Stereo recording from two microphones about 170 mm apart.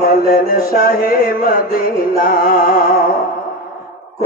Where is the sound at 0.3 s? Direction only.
60° left (ahead or behind).